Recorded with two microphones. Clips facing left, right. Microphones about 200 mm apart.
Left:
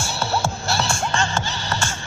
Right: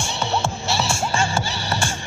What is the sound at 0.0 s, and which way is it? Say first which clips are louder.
Music: even; 5° left (ahead or behind).